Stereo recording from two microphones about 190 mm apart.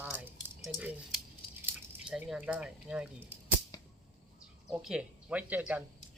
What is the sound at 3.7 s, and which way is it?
Arrow, 20° left (ahead or behind).